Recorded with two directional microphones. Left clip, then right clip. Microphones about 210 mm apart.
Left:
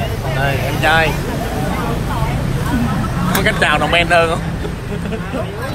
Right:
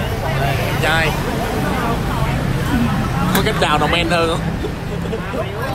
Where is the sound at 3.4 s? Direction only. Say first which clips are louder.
Left 3 dB; 25° right (ahead or behind).